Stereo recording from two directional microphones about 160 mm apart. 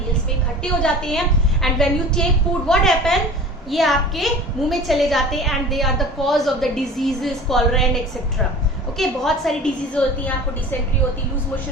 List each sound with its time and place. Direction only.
0.6 s a woman's voice: 5° left (ahead or behind)
9.0 s a woman's voice: centre (ahead or behind)